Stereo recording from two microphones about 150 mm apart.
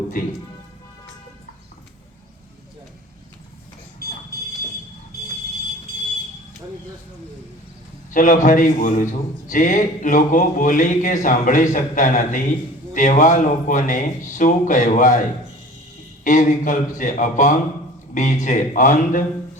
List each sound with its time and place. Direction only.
0.2 s speech: 65° left (ahead or behind)
8.1 s speech: 60° left (ahead or behind)
16.2 s speech: 55° left (ahead or behind)